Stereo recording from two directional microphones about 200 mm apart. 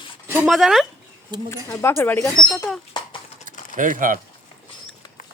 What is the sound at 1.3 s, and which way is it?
Speech, 20° right (ahead or behind).